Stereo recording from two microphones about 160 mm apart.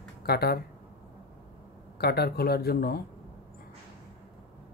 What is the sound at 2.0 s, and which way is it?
Speech, 85° left.